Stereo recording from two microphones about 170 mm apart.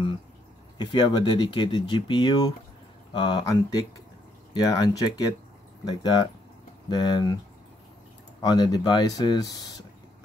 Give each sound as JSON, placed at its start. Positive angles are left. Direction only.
{"t": 0.7, "sound": "speech", "side_deg": 25}
{"t": 8.4, "sound": "speech", "side_deg": 20}